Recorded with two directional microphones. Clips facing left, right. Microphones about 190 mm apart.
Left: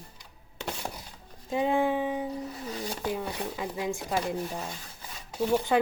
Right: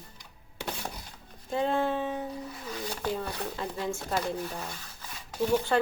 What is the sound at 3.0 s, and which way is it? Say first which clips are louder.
Speech: even; 15° left (ahead or behind).